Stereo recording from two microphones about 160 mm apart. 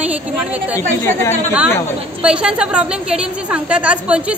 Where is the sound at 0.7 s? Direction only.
15° left (ahead or behind).